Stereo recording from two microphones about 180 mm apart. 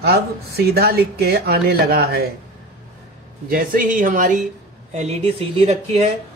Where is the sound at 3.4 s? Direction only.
50° right (ahead or behind).